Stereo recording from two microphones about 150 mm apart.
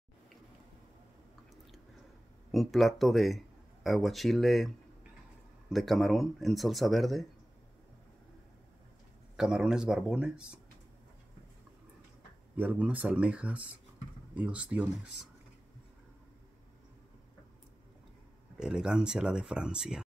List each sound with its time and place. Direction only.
2.5 s speech: centre (ahead or behind)
5.7 s speech: centre (ahead or behind)
9.4 s speech: 5° right (ahead or behind)
12.5 s speech: 10° right (ahead or behind)
18.6 s speech: 5° right (ahead or behind)